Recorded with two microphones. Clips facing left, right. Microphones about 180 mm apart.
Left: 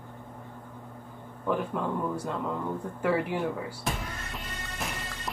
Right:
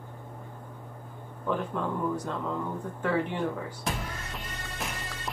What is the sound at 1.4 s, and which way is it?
Speech, 10° left (ahead or behind).